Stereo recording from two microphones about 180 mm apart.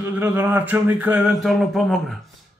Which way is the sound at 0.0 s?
10° right (ahead or behind).